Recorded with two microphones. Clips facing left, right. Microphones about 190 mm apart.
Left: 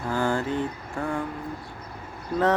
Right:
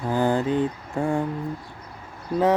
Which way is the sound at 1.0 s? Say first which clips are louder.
Right 5 dB; 25° right (ahead or behind).